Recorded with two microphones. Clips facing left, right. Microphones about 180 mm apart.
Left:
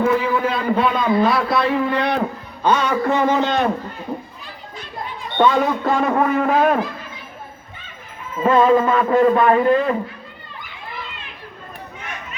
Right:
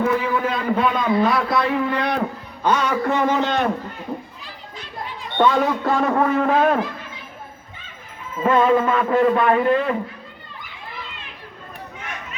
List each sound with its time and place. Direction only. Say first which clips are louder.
0.0 s a sound: left 2 dB; 30° left (ahead or behind)
1.5 s a man's voice: left 2 dB; 30° left (ahead or behind)
4.4 s children playing: left 2 dB; 50° left (ahead or behind)
5.4 s speech: left 1 dB; 20° left (ahead or behind)
8.4 s a man's voice: left 2 dB; 35° left (ahead or behind)